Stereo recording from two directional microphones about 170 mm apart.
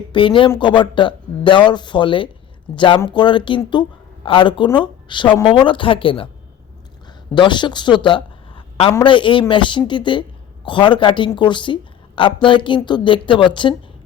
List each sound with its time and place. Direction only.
0.1 s a woman's voice: 30° left (ahead or behind)
7.3 s a man's voice: 25° left (ahead or behind)